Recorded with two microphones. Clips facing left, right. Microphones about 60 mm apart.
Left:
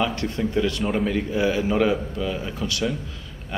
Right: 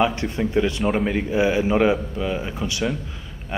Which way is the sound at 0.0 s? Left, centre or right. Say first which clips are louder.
Right 3 dB; right.